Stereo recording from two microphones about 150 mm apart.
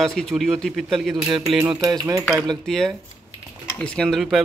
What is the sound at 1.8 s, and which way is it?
Speech, 20° right (ahead or behind).